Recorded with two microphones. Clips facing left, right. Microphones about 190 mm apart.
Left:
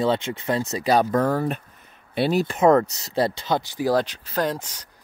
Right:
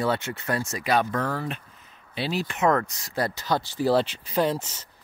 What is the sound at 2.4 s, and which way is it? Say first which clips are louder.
Speech: left 5 dB; 30° left (ahead or behind).